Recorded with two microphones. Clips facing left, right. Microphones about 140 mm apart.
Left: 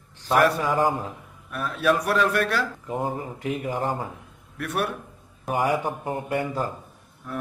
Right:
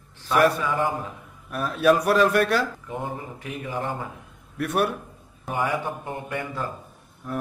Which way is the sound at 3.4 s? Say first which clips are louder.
Left 4 dB; 40° left (ahead or behind).